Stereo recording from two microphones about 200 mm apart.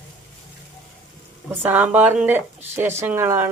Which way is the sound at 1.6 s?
10° right (ahead or behind).